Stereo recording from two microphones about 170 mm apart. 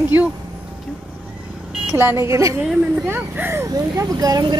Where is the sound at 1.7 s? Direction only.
Centre (ahead or behind).